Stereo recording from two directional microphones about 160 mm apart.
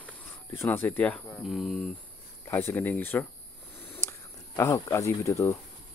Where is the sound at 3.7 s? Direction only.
10° left (ahead or behind).